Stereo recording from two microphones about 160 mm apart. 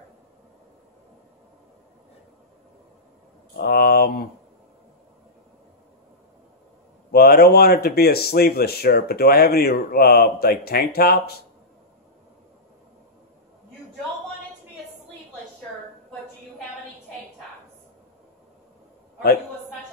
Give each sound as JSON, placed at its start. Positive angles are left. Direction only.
{"t": 3.5, "sound": "speech", "side_deg": 70}
{"t": 7.1, "sound": "speech", "side_deg": 75}